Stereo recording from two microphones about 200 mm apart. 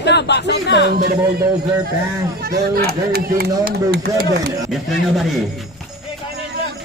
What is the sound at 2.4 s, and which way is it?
Speech, 50° right (ahead or behind).